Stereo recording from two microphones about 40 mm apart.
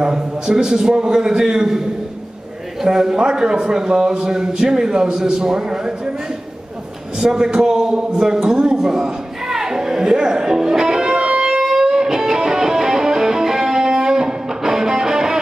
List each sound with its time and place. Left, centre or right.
0.0 s a man's voice: centre
2.8 s a man's voice: centre
7.2 s a sound: centre